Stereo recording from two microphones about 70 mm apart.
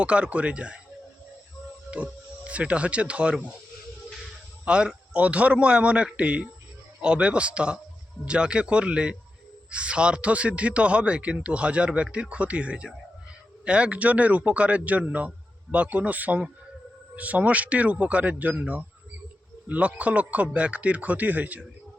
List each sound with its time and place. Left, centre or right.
0.0 s a man's voice: centre
1.9 s speech: centre
4.6 s a man's voice: centre